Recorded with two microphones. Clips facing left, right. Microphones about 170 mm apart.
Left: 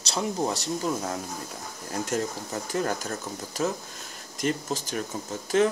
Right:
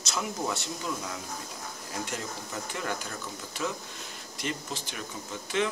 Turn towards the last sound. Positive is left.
turn(degrees=40)  # may be behind; listen again after turning